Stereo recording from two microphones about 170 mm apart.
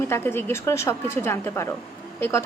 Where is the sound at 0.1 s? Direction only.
15° left (ahead or behind).